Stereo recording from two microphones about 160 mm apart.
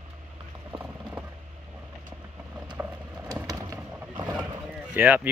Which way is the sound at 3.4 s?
20° right (ahead or behind).